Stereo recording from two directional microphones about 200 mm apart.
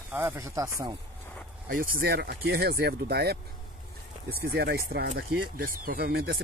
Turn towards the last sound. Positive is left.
turn(degrees=-50)  # may be behind; listen again after turning